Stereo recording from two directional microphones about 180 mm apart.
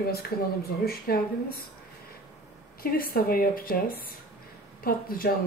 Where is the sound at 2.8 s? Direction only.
55° left (ahead or behind).